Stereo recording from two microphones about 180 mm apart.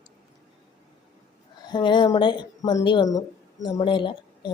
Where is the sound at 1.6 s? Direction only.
25° left (ahead or behind).